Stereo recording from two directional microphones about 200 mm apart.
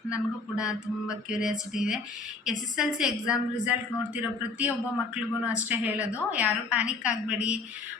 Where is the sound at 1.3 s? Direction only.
5° right (ahead or behind).